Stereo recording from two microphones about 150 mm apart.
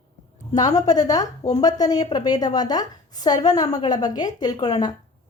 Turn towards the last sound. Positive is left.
turn(degrees=25)  # may be behind; listen again after turning